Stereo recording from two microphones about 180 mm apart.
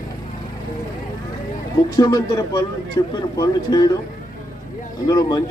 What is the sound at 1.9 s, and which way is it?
Speech, 20° left (ahead or behind).